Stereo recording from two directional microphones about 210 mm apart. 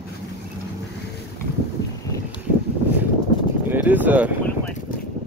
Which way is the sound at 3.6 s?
10° right (ahead or behind).